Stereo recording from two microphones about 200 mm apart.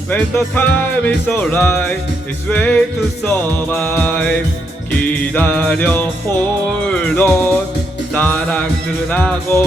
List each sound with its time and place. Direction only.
0.1 s music: 10° left (ahead or behind)